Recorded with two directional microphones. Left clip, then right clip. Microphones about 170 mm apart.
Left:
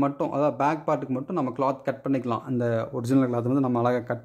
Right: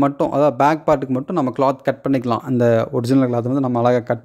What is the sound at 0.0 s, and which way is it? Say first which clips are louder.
A man's voice: right 8 dB; 30° right (ahead or behind).